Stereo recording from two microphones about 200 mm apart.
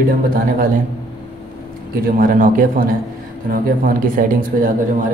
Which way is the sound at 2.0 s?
45° right (ahead or behind).